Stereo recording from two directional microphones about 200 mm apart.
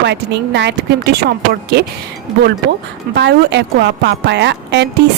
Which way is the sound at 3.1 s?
60° right (ahead or behind).